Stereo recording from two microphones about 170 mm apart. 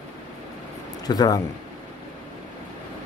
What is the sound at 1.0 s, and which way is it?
Speech, 25° left (ahead or behind).